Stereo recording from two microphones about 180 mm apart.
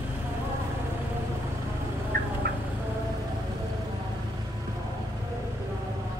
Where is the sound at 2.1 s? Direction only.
60° right (ahead or behind).